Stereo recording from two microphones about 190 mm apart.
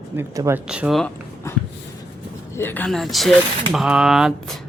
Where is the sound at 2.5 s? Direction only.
10° left (ahead or behind).